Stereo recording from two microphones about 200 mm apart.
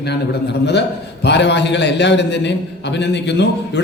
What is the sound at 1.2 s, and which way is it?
A man's voice, 60° left (ahead or behind).